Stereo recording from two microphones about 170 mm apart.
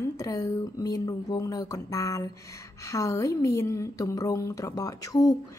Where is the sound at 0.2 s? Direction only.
20° left (ahead or behind).